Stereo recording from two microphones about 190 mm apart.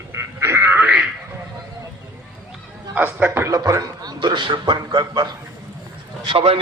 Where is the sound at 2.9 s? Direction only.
10° right (ahead or behind).